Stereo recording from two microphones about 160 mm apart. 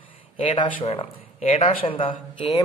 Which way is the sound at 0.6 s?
35° left (ahead or behind).